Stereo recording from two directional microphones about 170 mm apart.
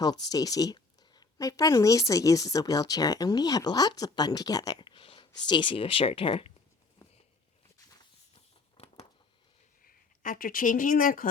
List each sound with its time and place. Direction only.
0.3 s a woman's voice: 20° left (ahead or behind)
8.8 s a sound: 35° left (ahead or behind)
9.8 s speech: 55° left (ahead or behind)